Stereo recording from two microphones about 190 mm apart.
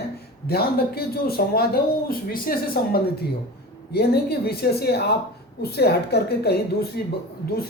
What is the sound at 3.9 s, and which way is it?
A woman's voice, 55° left (ahead or behind).